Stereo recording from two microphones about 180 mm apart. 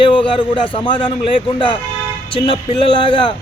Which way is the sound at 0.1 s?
30° left (ahead or behind).